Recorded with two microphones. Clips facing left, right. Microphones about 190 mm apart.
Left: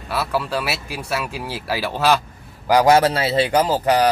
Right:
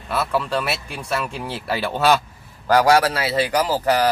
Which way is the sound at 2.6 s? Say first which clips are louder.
Left 2 dB; 20° left (ahead or behind).